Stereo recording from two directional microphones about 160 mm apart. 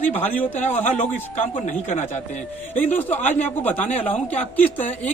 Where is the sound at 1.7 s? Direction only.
50° left (ahead or behind).